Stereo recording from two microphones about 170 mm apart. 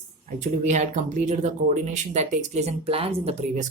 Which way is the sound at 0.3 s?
45° right (ahead or behind).